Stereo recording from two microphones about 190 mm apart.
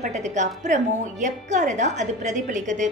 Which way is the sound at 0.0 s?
40° right (ahead or behind).